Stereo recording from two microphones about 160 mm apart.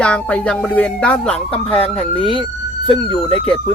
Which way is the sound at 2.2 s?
30° left (ahead or behind).